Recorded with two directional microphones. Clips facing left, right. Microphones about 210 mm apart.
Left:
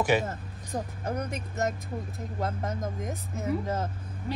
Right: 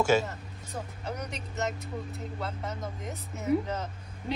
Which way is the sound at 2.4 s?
50° left (ahead or behind).